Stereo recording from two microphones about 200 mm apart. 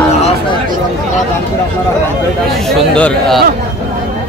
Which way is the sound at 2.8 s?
5° left (ahead or behind).